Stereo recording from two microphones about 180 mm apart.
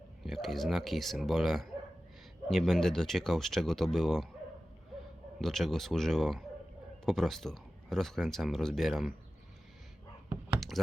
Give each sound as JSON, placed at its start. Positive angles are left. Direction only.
{"t": 0.3, "sound": "speech", "side_deg": 0}
{"t": 5.4, "sound": "speech", "side_deg": 0}